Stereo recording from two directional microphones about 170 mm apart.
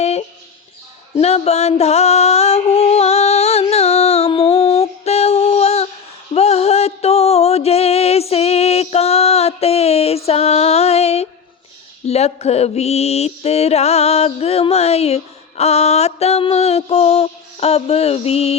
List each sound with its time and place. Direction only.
1.1 s music: 40° left (ahead or behind)
12.0 s mantra: 40° left (ahead or behind)